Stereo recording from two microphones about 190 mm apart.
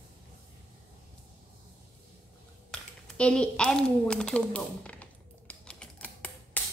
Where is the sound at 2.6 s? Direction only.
5° left (ahead or behind).